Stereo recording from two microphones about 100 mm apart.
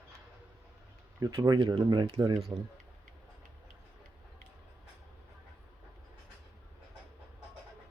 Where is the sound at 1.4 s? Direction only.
50° right (ahead or behind).